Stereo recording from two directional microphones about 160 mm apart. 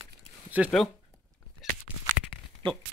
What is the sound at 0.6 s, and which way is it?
Speech, 10° right (ahead or behind).